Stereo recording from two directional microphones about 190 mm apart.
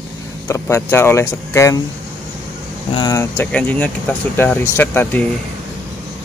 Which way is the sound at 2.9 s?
20° left (ahead or behind).